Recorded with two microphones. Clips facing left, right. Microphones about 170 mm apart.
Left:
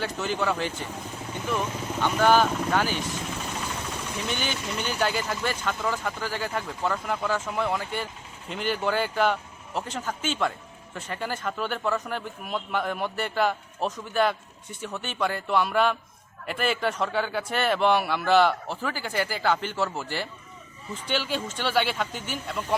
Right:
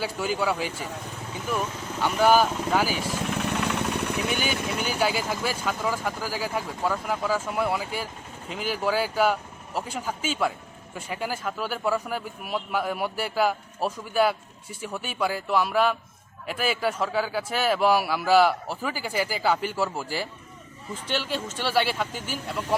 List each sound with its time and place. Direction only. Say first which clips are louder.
0.0 s speech: right 1 dB; 5° right (ahead or behind)
3.3 s vehicle: right 6 dB; 70° right (ahead or behind)
4.3 s a man's voice: right 3 dB; 5° right (ahead or behind)